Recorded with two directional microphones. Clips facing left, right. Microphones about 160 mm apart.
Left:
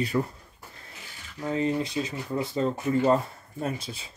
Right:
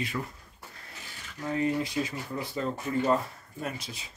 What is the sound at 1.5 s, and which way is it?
Speech, 20° left (ahead or behind).